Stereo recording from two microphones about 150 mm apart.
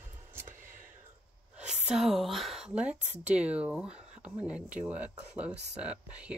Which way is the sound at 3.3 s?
10° right (ahead or behind).